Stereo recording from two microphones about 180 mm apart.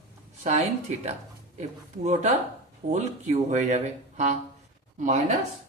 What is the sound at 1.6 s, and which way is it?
Speech, 40° right (ahead or behind).